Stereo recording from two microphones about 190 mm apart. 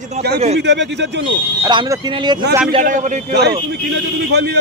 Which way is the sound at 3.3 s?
60° right (ahead or behind).